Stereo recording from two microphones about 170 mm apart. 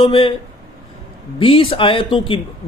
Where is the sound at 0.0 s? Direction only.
30° left (ahead or behind).